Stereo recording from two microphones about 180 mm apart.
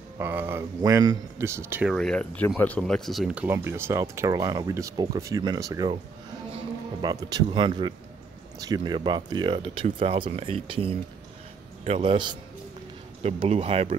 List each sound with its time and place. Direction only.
0.2 s speech: 10° right (ahead or behind)
2.0 s speech: 5° left (ahead or behind)
3.4 s speech: 15° right (ahead or behind)
7.0 s speech: 20° right (ahead or behind)